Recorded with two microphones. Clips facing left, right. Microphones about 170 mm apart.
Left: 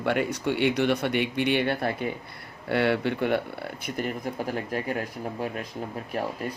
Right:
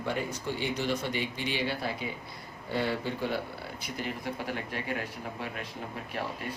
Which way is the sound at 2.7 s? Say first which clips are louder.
Left 7 dB; 70° left (ahead or behind).